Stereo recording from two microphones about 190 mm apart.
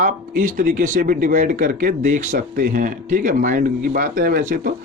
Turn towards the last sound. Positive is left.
turn(degrees=-45)  # may be behind; listen again after turning